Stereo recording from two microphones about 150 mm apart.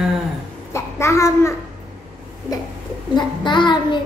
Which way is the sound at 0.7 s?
20° left (ahead or behind).